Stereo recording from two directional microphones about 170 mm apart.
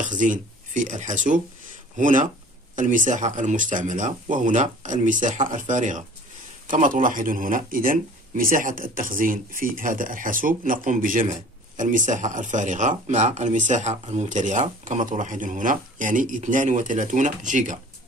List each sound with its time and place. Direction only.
0.0 s speech: 50° right (ahead or behind)